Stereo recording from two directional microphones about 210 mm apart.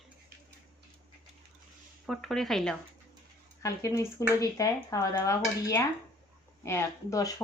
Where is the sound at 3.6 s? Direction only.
15° left (ahead or behind).